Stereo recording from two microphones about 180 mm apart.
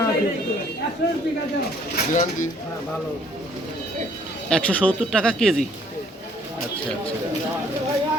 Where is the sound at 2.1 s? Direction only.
45° left (ahead or behind).